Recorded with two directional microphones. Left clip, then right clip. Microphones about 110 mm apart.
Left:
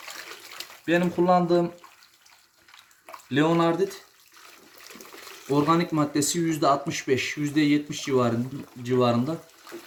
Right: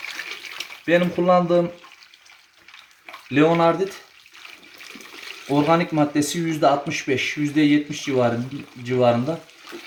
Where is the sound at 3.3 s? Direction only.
Centre (ahead or behind).